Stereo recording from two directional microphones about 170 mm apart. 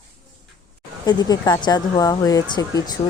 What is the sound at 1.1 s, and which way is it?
Speech, 25° left (ahead or behind).